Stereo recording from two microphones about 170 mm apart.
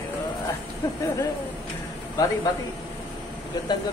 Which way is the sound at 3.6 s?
25° left (ahead or behind).